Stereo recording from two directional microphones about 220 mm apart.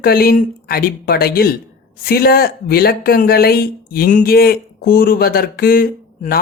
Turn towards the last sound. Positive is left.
turn(degrees=40)  # may be behind; listen again after turning